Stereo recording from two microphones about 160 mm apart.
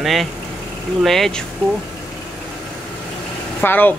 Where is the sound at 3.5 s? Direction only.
10° left (ahead or behind).